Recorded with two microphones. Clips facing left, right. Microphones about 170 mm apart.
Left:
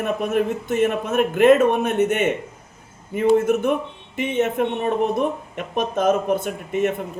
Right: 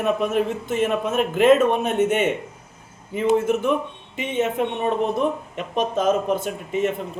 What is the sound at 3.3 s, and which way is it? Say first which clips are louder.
A man's voice: left 2 dB; 55° left (ahead or behind).